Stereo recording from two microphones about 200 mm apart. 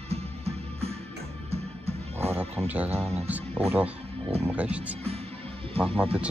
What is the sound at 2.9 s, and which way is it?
Speech, 30° right (ahead or behind).